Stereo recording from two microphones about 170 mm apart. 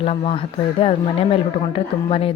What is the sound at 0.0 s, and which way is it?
A child's voice, 35° left (ahead or behind).